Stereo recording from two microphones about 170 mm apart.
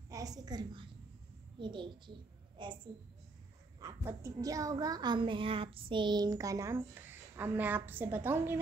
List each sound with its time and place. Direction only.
0.1 s a child's voice: 20° right (ahead or behind)